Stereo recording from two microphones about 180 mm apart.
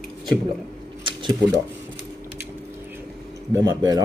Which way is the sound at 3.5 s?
20° right (ahead or behind).